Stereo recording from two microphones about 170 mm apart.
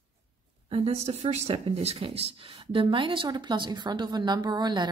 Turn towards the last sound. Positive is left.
turn(degrees=-25)  # may be behind; listen again after turning